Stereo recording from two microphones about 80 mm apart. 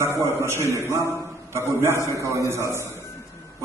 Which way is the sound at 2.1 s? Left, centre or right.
Right.